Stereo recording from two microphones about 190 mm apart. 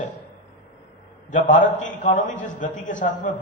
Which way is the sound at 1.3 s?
40° left (ahead or behind).